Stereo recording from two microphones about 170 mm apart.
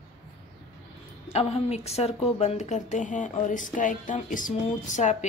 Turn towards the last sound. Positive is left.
turn(degrees=45)  # may be behind; listen again after turning